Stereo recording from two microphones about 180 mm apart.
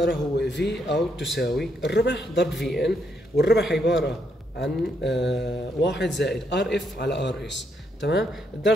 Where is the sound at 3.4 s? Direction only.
70° left (ahead or behind).